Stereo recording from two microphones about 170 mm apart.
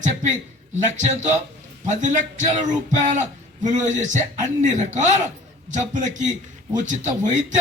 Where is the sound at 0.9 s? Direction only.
45° right (ahead or behind).